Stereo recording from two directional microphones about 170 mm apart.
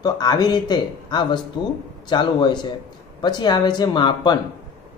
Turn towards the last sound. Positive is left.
turn(degrees=25)  # may be behind; listen again after turning